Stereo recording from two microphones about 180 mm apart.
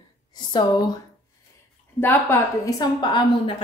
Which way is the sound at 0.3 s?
25° left (ahead or behind).